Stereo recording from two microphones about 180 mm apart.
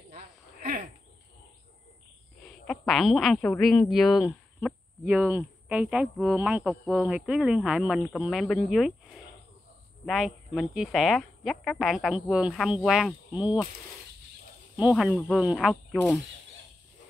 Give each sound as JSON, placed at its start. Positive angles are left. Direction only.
{"t": 0.1, "sound": "a sound", "side_deg": -45}
{"t": 2.4, "sound": "a woman's voice", "side_deg": 5}
{"t": 14.8, "sound": "speech", "side_deg": -5}